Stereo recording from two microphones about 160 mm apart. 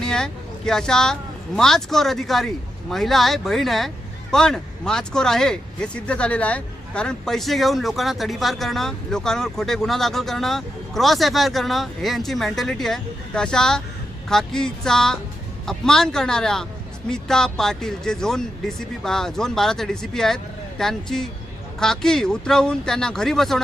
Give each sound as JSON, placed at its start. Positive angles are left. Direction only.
{"t": 0.0, "sound": "speech", "side_deg": 5}